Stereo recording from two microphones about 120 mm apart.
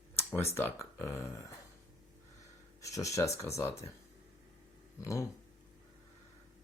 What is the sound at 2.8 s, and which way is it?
Speech, 25° left (ahead or behind).